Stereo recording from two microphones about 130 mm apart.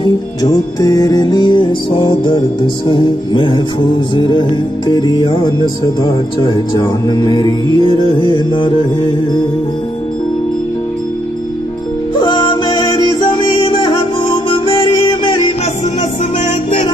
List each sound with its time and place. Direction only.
0.4 s music: 30° left (ahead or behind)
12.2 s music: 35° left (ahead or behind)